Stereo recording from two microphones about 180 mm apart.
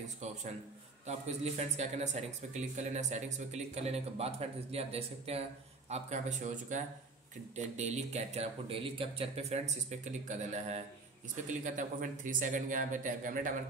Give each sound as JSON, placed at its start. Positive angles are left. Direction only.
{"t": 1.0, "sound": "a man's voice", "side_deg": -40}